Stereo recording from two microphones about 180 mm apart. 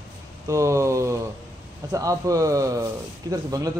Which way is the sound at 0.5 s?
15° right (ahead or behind).